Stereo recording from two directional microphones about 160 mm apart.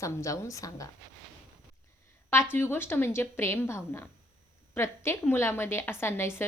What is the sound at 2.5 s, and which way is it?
A woman's voice, 15° left (ahead or behind).